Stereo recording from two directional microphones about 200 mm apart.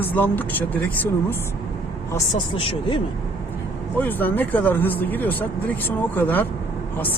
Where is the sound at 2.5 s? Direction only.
30° left (ahead or behind).